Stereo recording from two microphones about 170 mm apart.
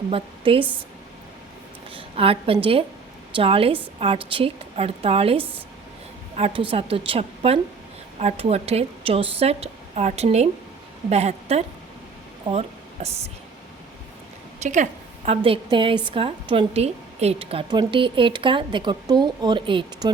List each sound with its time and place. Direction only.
0.1 s a woman's voice: 30° right (ahead or behind)
1.9 s a woman's voice: 30° right (ahead or behind)
14.6 s a sound: 45° right (ahead or behind)
15.4 s a woman's voice: 30° right (ahead or behind)